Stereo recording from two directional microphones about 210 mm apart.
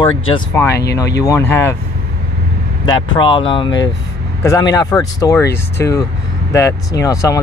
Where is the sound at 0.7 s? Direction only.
50° left (ahead or behind).